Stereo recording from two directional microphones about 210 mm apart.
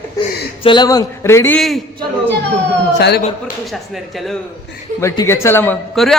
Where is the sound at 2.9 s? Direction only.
55° left (ahead or behind).